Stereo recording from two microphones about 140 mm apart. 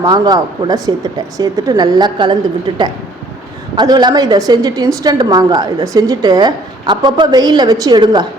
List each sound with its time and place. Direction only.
0.0 s a woman's voice: 30° right (ahead or behind)